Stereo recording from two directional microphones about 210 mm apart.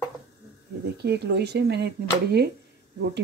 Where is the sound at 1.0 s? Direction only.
50° right (ahead or behind).